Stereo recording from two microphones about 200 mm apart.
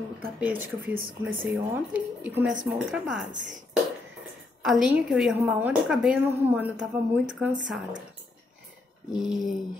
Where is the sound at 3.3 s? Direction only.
40° right (ahead or behind).